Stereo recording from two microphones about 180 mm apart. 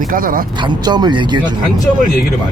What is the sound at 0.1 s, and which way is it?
Speech, 50° right (ahead or behind).